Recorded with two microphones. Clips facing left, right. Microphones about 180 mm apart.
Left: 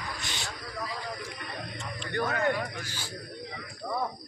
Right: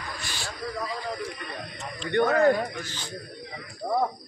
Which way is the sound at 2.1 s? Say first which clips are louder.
Right 8 dB; 30° right (ahead or behind).